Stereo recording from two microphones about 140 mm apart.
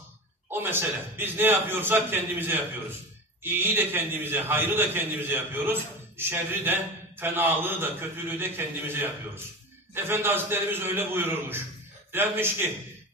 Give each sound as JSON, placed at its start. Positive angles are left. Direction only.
{"t": 0.5, "sound": "a man's voice", "side_deg": -15}